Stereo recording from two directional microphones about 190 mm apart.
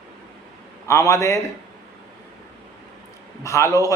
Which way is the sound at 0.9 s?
15° left (ahead or behind).